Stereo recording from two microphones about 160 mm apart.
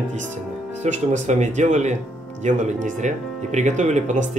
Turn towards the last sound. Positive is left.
turn(degrees=-45)  # may be behind; listen again after turning